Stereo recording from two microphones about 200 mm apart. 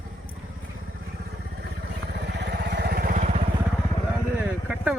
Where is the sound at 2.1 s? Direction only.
55° right (ahead or behind); by 3.4 s 35° right (ahead or behind).